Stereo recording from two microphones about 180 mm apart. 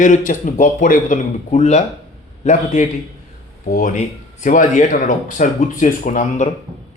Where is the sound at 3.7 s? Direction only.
45° left (ahead or behind).